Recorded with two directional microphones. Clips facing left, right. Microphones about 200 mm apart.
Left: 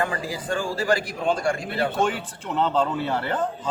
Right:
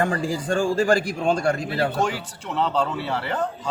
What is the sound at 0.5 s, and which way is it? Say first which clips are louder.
A man's voice: right 4 dB; 45° right (ahead or behind).